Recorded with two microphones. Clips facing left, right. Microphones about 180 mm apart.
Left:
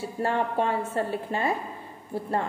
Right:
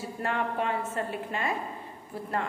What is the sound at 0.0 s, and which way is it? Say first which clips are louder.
A woman's voice: left 4 dB; 30° left (ahead or behind).